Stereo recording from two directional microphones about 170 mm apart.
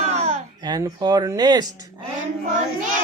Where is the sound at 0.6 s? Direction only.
25° right (ahead or behind).